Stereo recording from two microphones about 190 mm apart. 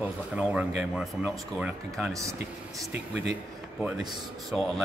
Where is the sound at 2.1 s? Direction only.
15° right (ahead or behind).